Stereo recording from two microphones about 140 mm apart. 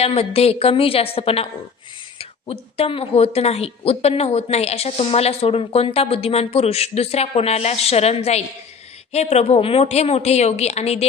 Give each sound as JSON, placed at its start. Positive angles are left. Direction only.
{"t": 0.0, "sound": "speech", "side_deg": 45}